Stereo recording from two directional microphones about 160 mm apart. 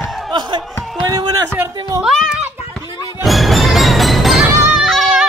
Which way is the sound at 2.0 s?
Centre (ahead or behind).